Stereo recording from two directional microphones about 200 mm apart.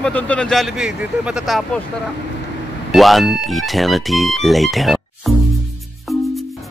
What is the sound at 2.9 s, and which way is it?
Speech, centre (ahead or behind).